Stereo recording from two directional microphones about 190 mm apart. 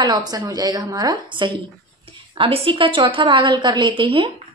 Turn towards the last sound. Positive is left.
turn(degrees=-30)  # may be behind; listen again after turning